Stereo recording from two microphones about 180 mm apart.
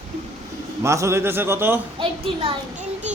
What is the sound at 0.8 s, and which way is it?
A man's voice, 15° right (ahead or behind).